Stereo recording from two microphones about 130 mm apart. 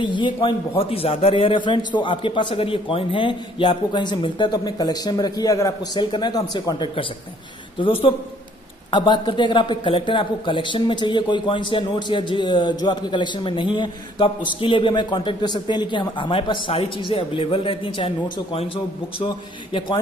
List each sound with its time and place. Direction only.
0.0 s a man's voice: 40° left (ahead or behind)
8.9 s a man's voice: 35° left (ahead or behind)
19.2 s a man's voice: 35° left (ahead or behind)